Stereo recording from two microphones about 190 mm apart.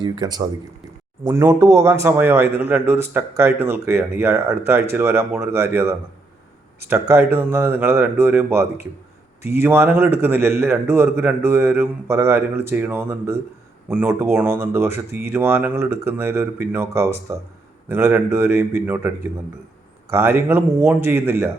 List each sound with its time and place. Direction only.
0.0 s a man's voice: 20° right (ahead or behind)